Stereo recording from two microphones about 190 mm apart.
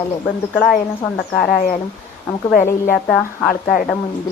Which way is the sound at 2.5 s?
45° left (ahead or behind).